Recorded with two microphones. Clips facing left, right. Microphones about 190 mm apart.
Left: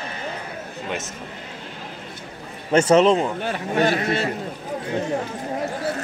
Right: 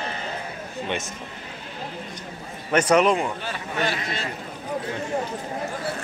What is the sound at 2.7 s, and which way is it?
Speech, 25° left (ahead or behind).